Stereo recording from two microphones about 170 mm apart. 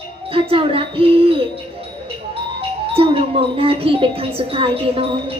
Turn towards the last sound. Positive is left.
turn(degrees=-35)  # may be behind; listen again after turning